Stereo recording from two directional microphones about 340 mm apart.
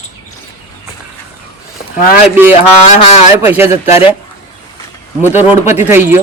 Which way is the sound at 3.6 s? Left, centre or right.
Centre.